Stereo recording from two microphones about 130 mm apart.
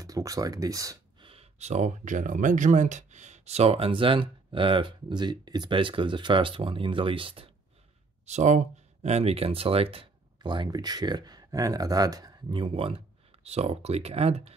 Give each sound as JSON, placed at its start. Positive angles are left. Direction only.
{"t": 0.0, "sound": "speech", "side_deg": -25}
{"t": 1.2, "sound": "speech", "side_deg": -50}
{"t": 8.3, "sound": "speech", "side_deg": -65}